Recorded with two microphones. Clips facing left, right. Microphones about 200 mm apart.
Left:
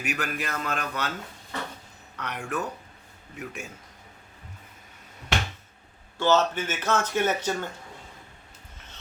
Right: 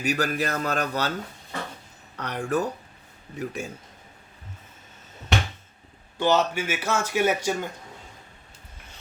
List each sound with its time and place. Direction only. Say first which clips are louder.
0.0 s a man's voice: right 6 dB; 35° right (ahead or behind)
2.1 s a man's voice: right 6 dB; 35° right (ahead or behind)
6.1 s speech: even; 15° right (ahead or behind)